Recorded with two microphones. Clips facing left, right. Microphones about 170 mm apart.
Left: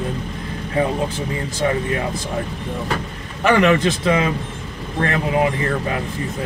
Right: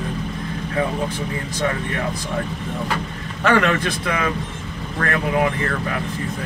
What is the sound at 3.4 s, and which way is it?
A man's voice, 20° left (ahead or behind).